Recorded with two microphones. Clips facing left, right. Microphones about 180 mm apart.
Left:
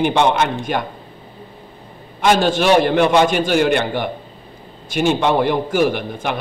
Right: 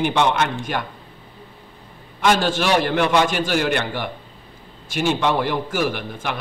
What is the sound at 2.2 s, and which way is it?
A man's voice, 20° left (ahead or behind).